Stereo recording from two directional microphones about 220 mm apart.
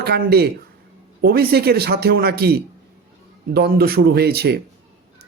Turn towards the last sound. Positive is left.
turn(degrees=-45)  # may be behind; listen again after turning